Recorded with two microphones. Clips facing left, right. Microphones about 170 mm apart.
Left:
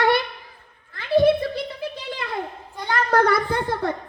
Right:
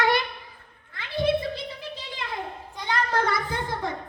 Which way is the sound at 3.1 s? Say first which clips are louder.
Left 10 dB; 55° left (ahead or behind).